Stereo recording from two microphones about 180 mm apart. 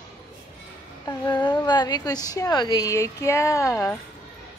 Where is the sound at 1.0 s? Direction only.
25° left (ahead or behind).